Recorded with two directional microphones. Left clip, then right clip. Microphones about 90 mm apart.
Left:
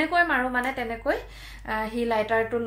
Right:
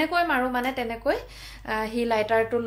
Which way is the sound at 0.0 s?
20° right (ahead or behind).